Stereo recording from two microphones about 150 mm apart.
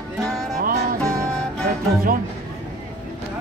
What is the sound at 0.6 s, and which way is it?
Music, 70° right (ahead or behind).